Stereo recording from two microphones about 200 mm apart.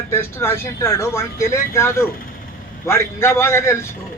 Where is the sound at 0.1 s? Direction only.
10° left (ahead or behind).